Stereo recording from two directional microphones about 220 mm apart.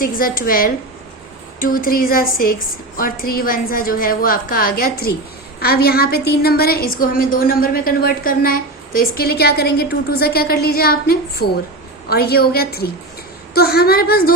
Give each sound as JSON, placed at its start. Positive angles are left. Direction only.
{"t": 0.0, "sound": "a woman's voice", "side_deg": 40}